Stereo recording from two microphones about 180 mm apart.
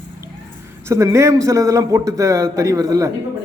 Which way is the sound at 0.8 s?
15° right (ahead or behind).